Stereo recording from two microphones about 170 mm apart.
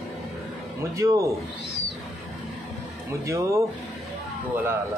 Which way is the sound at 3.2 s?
20° right (ahead or behind).